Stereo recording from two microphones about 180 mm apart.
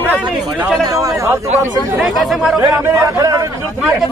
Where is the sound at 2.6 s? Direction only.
15° right (ahead or behind).